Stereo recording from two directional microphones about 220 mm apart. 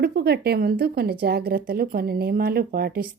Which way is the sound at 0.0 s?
45° right (ahead or behind).